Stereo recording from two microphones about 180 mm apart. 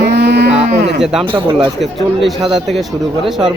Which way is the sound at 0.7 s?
70° right (ahead or behind).